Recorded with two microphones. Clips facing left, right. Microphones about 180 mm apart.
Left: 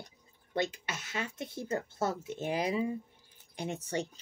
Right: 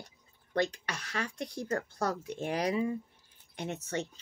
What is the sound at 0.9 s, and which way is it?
Speech, 25° left (ahead or behind).